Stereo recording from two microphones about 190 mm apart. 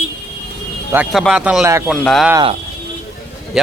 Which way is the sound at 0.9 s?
5° right (ahead or behind).